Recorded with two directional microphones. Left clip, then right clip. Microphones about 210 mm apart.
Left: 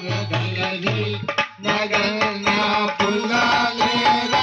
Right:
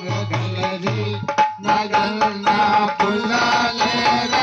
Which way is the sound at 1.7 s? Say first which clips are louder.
Right 2 dB; 45° right (ahead or behind).